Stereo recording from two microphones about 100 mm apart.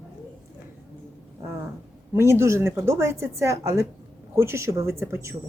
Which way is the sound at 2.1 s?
25° right (ahead or behind).